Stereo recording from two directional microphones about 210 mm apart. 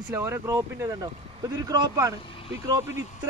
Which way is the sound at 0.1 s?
10° right (ahead or behind).